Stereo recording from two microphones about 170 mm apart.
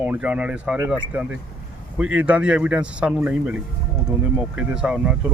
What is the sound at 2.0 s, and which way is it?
Speech, 5° right (ahead or behind).